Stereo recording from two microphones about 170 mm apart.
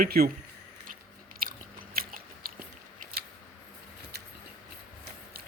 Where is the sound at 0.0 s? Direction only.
60° right (ahead or behind).